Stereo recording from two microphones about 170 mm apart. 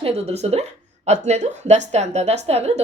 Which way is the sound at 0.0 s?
40° right (ahead or behind).